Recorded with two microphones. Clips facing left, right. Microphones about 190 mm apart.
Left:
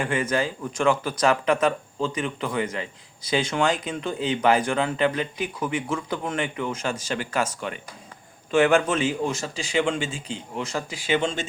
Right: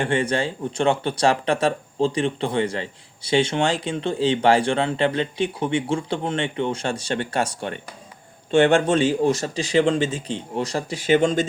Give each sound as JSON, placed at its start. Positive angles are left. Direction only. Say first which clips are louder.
{"t": 0.0, "sound": "speech", "louder": "right 2 dB", "side_deg": -30}